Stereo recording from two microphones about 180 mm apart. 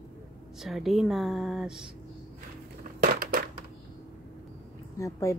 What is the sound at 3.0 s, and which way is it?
Crushing, 50° right (ahead or behind).